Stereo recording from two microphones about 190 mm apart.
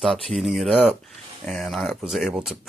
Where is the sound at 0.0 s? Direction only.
Centre (ahead or behind).